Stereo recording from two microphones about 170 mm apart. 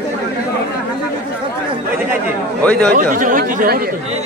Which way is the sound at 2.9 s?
50° right (ahead or behind).